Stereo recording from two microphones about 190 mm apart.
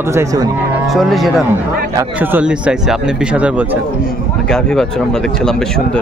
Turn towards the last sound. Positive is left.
turn(degrees=5)  # may be behind; listen again after turning